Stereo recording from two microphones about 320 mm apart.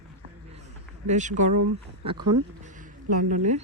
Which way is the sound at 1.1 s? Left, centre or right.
Right.